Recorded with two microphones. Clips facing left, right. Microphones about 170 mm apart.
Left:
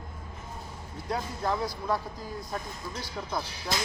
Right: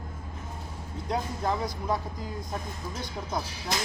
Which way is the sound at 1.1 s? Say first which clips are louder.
Right 1 dB; 20° right (ahead or behind).